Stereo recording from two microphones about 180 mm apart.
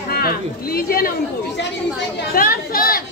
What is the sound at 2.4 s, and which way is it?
Speech, 55° left (ahead or behind).